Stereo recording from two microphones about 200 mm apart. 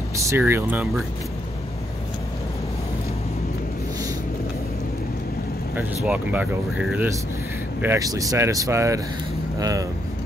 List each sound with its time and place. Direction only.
0.3 s speech: 10° right (ahead or behind)
6.0 s speech: 5° right (ahead or behind)